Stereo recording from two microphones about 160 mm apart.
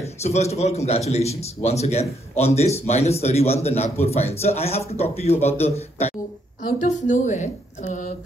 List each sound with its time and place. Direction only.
0.0 s a man's voice: 45° left (ahead or behind)
6.6 s a woman's voice: 50° left (ahead or behind)